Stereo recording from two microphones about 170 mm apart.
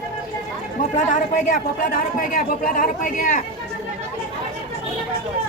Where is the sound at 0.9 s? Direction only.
50° left (ahead or behind).